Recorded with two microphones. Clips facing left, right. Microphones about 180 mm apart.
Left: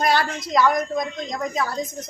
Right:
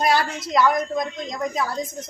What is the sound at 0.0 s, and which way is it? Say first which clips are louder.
A woman's voice: even; 5° right (ahead or behind).